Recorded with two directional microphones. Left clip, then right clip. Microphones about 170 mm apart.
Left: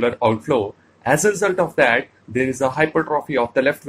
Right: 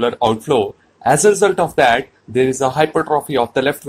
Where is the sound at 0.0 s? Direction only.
30° right (ahead or behind).